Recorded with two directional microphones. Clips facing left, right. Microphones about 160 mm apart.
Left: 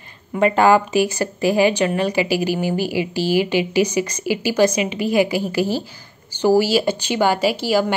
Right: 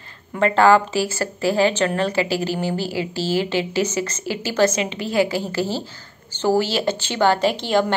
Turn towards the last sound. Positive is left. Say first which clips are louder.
# left 1 dB
turn(degrees=5)  # may be behind; listen again after turning